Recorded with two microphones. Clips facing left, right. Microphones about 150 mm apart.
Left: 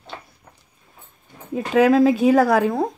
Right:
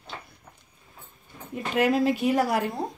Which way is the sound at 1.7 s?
90° left.